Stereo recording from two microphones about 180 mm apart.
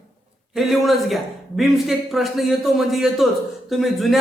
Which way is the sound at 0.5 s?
Centre (ahead or behind).